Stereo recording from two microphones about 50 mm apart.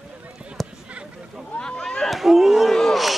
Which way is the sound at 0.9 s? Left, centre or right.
Centre.